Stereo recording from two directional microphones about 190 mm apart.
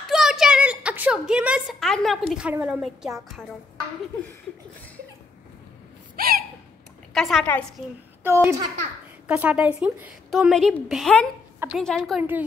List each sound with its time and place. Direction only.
0.0 s a woman's voice: centre (ahead or behind)
6.1 s gasp: 50° right (ahead or behind)
7.2 s a woman's voice: centre (ahead or behind)
8.2 s a child's voice: 15° right (ahead or behind); by 12.0 s 5° left (ahead or behind)
12.0 s speech: 5° right (ahead or behind)